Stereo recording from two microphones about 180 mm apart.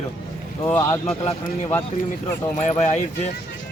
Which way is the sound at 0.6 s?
15° left (ahead or behind).